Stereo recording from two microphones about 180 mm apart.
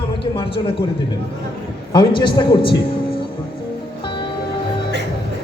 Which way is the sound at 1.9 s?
25° left (ahead or behind).